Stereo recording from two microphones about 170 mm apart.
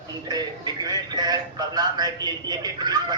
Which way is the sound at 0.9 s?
25° right (ahead or behind).